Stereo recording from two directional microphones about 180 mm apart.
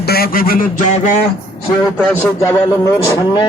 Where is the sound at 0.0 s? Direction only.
60° left (ahead or behind).